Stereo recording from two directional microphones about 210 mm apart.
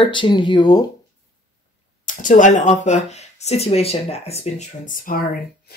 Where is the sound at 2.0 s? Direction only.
35° left (ahead or behind).